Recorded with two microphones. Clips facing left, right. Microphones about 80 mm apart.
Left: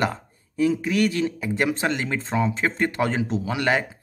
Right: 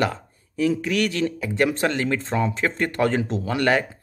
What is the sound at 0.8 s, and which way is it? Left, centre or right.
Speech, left.